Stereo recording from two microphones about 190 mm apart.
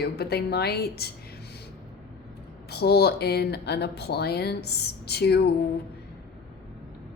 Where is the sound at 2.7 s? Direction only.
55° left (ahead or behind).